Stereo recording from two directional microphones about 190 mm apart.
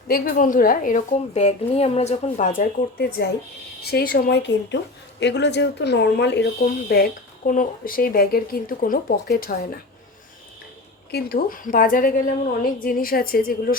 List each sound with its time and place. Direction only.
0.1 s speech: 45° left (ahead or behind)
11.1 s speech: 55° left (ahead or behind)